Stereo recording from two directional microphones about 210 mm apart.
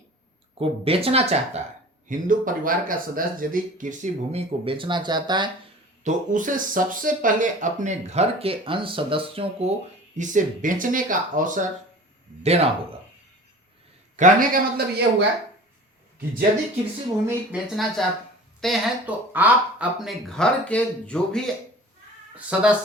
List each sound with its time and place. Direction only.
0.6 s speech: 25° right (ahead or behind)
6.0 s speech: 35° right (ahead or behind)
14.2 s speech: 40° right (ahead or behind)
17.2 s speech: 5° right (ahead or behind)